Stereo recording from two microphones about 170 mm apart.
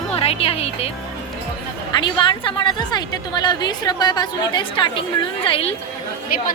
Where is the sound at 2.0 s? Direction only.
30° left (ahead or behind).